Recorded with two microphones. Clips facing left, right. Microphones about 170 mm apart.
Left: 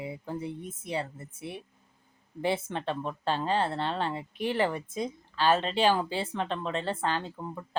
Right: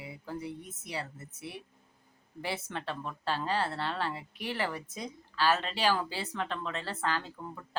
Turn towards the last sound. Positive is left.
turn(degrees=25)  # may be behind; listen again after turning